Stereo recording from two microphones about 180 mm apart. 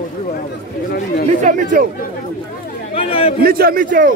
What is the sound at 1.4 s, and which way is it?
Speech, 45° right (ahead or behind).